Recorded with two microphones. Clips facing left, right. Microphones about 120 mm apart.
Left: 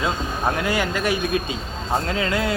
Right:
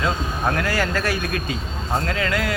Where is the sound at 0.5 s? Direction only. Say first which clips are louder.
Even; 20° left (ahead or behind).